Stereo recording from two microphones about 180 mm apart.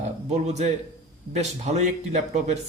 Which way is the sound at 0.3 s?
40° right (ahead or behind).